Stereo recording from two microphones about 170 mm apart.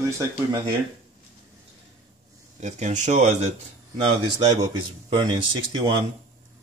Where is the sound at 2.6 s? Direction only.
45° right (ahead or behind).